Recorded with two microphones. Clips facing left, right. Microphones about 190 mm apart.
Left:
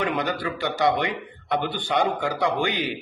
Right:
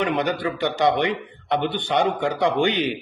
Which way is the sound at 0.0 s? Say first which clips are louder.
Right 3 dB; 20° right (ahead or behind).